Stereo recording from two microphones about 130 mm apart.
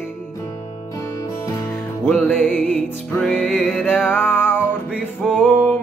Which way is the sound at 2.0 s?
15° left (ahead or behind).